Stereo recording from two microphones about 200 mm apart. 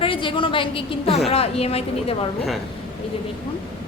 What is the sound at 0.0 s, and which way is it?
A woman's voice, 25° left (ahead or behind).